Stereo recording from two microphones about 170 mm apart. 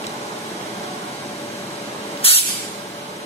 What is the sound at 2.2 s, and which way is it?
Vehicle, 35° left (ahead or behind).